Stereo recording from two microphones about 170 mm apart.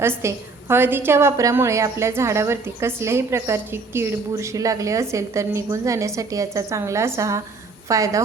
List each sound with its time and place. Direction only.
0.0 s a woman's voice: 15° right (ahead or behind)